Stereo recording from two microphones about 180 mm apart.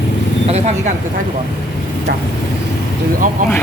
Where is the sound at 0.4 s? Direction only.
35° right (ahead or behind).